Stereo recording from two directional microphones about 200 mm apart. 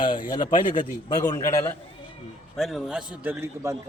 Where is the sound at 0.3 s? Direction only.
25° left (ahead or behind).